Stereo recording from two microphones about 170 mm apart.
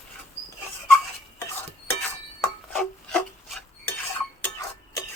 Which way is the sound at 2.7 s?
5° left (ahead or behind).